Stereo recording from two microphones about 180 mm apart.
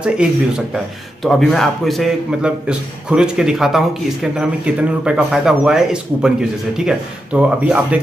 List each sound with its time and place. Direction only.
1.2 s speech: centre (ahead or behind)